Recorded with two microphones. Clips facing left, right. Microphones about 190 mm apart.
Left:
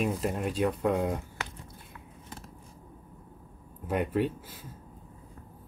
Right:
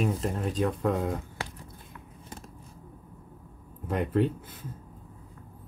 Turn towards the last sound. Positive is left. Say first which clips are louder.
# right 3 dB
turn(degrees=5)  # may be behind; listen again after turning